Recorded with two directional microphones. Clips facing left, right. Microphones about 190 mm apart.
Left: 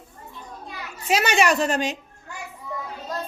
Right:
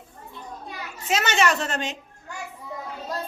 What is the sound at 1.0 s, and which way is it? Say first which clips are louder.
Speech: left 2 dB; 15° left (ahead or behind).